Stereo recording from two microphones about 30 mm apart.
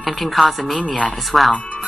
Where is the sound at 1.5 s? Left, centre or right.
Left.